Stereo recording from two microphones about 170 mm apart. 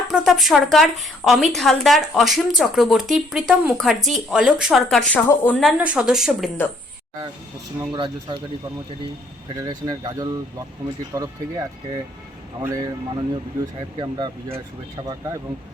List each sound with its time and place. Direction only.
0.1 s speech: centre (ahead or behind)
5.3 s speech: 15° left (ahead or behind)
5.5 s speech: 5° right (ahead or behind)
7.8 s speech: 25° right (ahead or behind)
9.6 s speech: 25° right (ahead or behind)
12.6 s speech: 20° right (ahead or behind)
14.0 s speech: 25° right (ahead or behind)